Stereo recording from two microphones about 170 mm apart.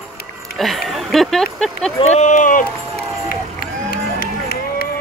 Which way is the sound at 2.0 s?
40° left (ahead or behind).